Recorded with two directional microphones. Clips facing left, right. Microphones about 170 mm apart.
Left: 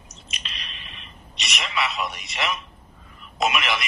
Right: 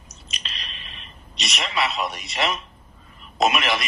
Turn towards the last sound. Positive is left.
turn(degrees=-35)  # may be behind; listen again after turning